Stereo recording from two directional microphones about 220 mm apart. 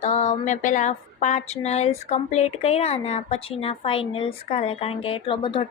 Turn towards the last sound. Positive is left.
turn(degrees=25)  # may be behind; listen again after turning